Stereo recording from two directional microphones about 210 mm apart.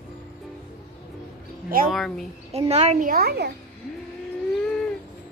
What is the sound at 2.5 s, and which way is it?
Speech, 30° right (ahead or behind).